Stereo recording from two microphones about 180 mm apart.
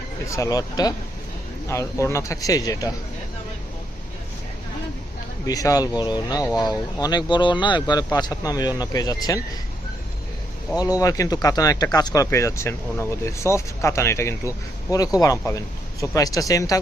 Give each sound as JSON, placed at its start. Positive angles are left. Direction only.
{"t": 0.3, "sound": "speech", "side_deg": 15}
{"t": 5.5, "sound": "speech", "side_deg": 20}
{"t": 11.0, "sound": "speech", "side_deg": 20}